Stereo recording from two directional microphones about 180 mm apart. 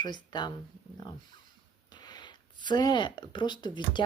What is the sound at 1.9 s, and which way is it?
Speech, 25° left (ahead or behind).